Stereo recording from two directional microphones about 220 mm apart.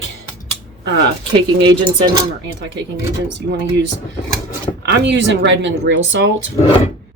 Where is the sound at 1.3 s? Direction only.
20° right (ahead or behind).